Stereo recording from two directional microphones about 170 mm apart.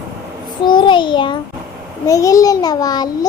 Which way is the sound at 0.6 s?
25° left (ahead or behind).